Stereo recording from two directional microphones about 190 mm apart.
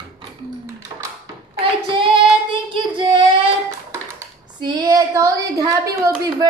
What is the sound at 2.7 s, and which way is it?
Speech, 25° right (ahead or behind).